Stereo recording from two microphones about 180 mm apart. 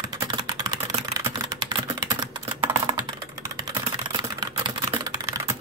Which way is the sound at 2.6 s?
25° right (ahead or behind).